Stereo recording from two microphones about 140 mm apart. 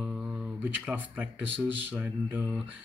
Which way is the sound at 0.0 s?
5° right (ahead or behind).